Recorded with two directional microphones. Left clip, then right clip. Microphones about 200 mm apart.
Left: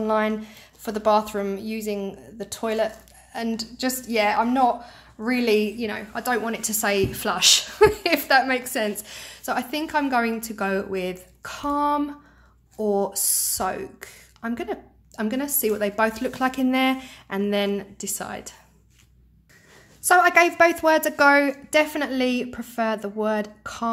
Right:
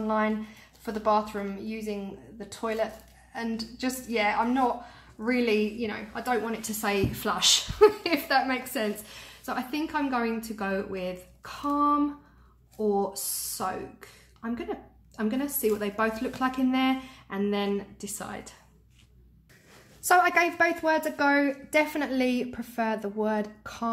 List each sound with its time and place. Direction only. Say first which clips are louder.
0.0 s a woman's voice: left 5 dB; 50° left (ahead or behind)
20.0 s a woman's voice: left 5 dB; 10° left (ahead or behind)